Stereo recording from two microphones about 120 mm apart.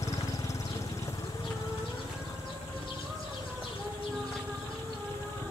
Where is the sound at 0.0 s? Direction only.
25° left (ahead or behind).